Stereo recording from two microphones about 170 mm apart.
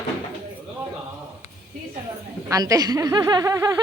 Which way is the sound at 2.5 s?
20° right (ahead or behind).